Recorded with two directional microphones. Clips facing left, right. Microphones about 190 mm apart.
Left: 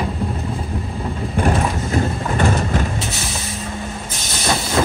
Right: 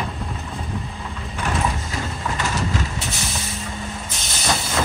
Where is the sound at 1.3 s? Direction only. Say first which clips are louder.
Left 5 dB; 50° left (ahead or behind).